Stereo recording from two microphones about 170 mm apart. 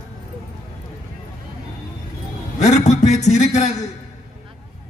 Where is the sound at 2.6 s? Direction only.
40° left (ahead or behind).